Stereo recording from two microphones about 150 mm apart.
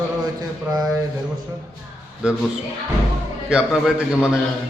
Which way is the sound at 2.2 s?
5° right (ahead or behind).